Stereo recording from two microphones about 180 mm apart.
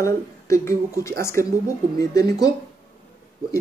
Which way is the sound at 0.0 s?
15° left (ahead or behind).